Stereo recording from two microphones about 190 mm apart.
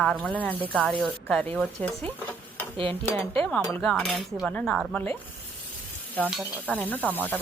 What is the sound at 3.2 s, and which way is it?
Speech, 10° left (ahead or behind).